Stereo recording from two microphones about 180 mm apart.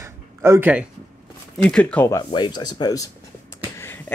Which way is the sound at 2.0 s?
20° left (ahead or behind).